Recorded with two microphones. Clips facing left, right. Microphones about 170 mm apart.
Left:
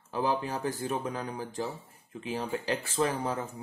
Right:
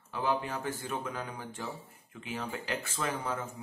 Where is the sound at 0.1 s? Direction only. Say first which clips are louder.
Left 2 dB; 35° left (ahead or behind).